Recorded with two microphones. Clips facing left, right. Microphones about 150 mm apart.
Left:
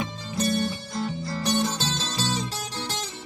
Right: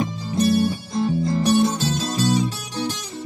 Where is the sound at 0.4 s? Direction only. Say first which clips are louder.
Right 7 dB; 10° right (ahead or behind).